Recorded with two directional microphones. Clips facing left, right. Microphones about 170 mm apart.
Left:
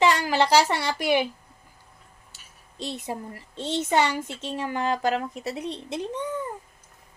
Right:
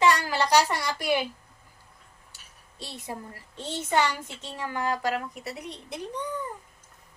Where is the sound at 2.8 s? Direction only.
20° left (ahead or behind).